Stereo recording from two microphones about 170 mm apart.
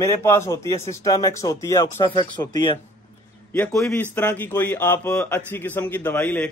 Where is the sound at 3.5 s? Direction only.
5° left (ahead or behind).